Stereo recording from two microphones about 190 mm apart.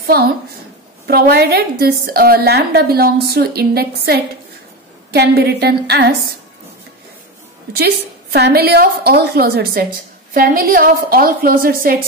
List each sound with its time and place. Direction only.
0.0 s a woman's voice: 55° right (ahead or behind)
7.7 s a woman's voice: 60° right (ahead or behind)